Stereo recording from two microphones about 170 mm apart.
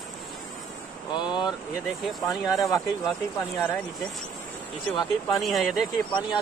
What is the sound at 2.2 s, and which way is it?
Speech, 20° left (ahead or behind).